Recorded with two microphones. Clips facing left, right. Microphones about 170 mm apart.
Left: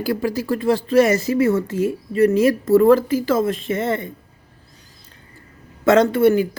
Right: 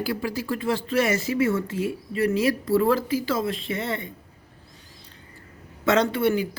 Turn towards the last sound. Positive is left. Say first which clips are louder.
# left 7 dB
turn(degrees=50)  # may be behind; listen again after turning